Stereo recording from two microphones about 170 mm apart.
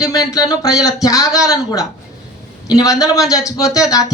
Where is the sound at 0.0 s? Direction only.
20° left (ahead or behind).